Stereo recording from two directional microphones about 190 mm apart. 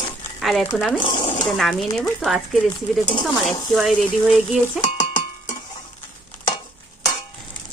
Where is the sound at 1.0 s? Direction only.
25° left (ahead or behind).